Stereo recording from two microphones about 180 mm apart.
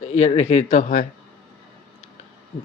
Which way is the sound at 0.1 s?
35° left (ahead or behind).